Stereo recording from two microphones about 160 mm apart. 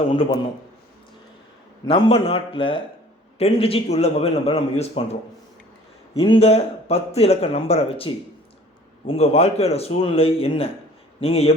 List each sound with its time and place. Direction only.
0.1 s speech: 35° left (ahead or behind)
1.9 s speech: 35° left (ahead or behind)
6.1 s speech: 35° left (ahead or behind)